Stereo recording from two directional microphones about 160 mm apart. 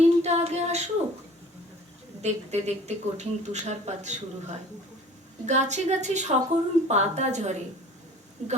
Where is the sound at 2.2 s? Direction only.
45° right (ahead or behind).